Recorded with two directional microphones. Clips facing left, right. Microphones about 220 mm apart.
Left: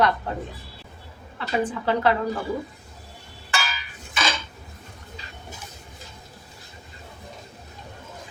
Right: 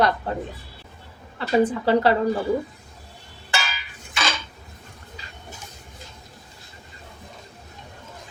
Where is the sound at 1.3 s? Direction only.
35° right (ahead or behind).